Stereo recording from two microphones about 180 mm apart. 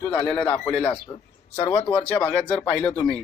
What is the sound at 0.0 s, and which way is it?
Speech, 5° left (ahead or behind).